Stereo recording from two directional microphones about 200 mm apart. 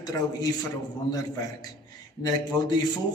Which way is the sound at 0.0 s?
20° left (ahead or behind).